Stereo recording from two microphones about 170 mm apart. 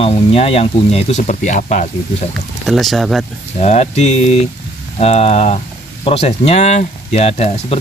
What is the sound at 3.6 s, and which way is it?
Speech, 40° left (ahead or behind).